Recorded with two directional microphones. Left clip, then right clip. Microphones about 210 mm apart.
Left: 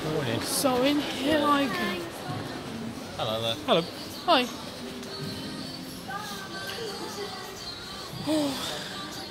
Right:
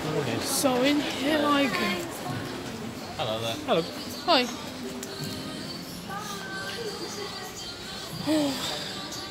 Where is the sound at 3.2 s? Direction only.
30° left (ahead or behind).